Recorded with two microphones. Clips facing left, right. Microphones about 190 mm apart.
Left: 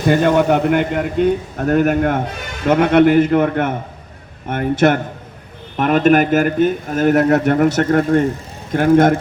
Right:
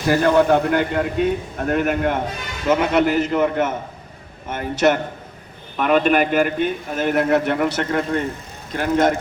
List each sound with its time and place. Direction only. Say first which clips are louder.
0.1 s a man's voice: left 1 dB; 20° left (ahead or behind)
1.2 s a man's voice: left 4 dB; 40° left (ahead or behind)